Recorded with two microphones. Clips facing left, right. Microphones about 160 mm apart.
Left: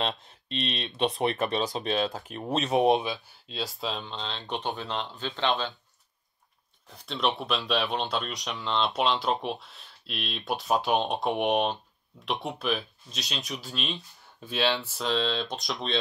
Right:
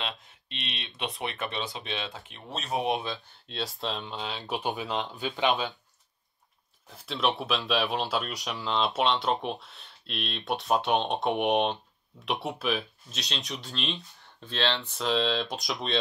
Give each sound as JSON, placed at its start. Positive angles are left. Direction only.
{"t": 0.0, "sound": "speech", "side_deg": 35}
{"t": 3.0, "sound": "speech", "side_deg": 10}
{"t": 3.4, "sound": "speech", "side_deg": 0}
{"t": 6.9, "sound": "speech", "side_deg": 0}